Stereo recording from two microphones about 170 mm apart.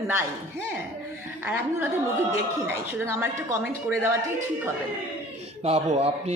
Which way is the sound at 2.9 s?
15° right (ahead or behind).